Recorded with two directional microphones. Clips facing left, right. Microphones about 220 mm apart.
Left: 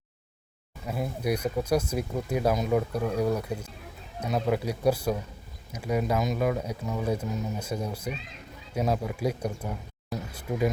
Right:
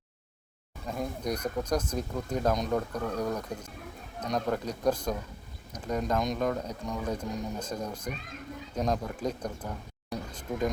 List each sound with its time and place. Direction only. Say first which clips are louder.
0.9 s speech: left 3 dB; 5° left (ahead or behind)